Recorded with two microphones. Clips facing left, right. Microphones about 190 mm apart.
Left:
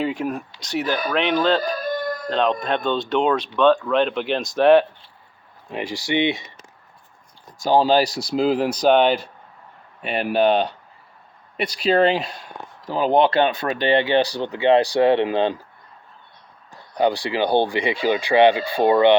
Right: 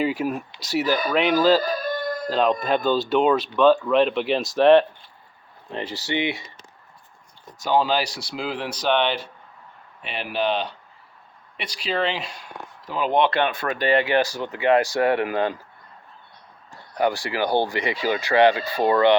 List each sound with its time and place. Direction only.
0.0 s speech: 5° right (ahead or behind)
5.7 s speech: 15° left (ahead or behind)
7.6 s speech: 35° left (ahead or behind)
13.1 s speech: 20° left (ahead or behind)
17.0 s speech: 20° left (ahead or behind)